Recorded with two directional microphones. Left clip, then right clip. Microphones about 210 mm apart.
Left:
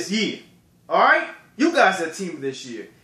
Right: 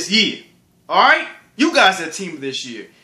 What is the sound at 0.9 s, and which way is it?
Speech, 15° right (ahead or behind).